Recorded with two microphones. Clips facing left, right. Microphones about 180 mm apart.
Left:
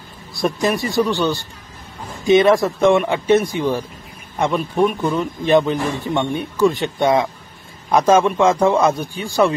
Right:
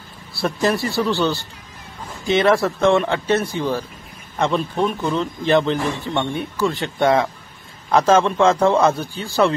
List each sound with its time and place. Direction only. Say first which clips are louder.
0.3 s a man's voice: left 1 dB; 15° left (ahead or behind)